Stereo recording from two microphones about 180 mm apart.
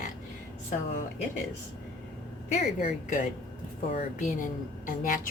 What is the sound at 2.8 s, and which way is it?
A woman's voice, 45° left (ahead or behind).